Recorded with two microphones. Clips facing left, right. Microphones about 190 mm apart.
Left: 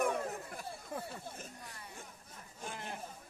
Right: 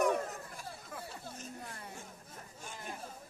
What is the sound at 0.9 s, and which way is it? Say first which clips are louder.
Chatter: left 5 dB; 35° left (ahead or behind).